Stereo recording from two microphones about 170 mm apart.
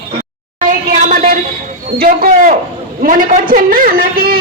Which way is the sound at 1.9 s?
55° right (ahead or behind).